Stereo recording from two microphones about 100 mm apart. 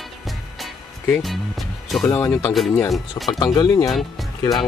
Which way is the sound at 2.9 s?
Centre (ahead or behind).